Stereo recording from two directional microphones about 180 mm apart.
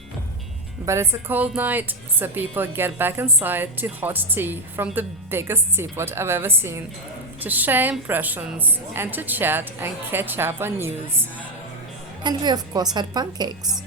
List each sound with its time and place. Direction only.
0.9 s a woman's voice: 15° right (ahead or behind)
12.2 s a woman's voice: 25° right (ahead or behind)